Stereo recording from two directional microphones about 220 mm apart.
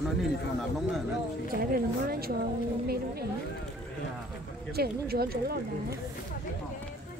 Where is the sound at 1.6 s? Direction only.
45° right (ahead or behind).